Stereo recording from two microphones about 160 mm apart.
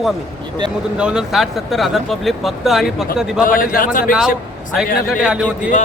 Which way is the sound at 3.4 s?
60° left (ahead or behind).